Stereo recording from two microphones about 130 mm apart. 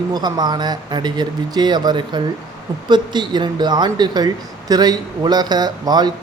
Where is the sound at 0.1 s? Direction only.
30° right (ahead or behind).